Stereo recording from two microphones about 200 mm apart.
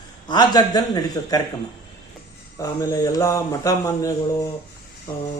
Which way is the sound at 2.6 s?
15° left (ahead or behind).